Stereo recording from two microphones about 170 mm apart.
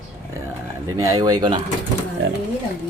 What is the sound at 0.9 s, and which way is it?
Speech, 20° right (ahead or behind).